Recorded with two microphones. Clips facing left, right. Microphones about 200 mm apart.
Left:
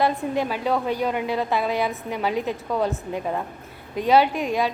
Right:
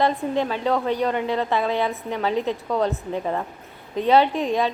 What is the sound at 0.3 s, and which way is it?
A woman's voice, 10° left (ahead or behind).